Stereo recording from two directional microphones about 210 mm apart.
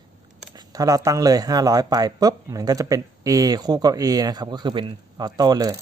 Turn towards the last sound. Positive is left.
turn(degrees=-15)  # may be behind; listen again after turning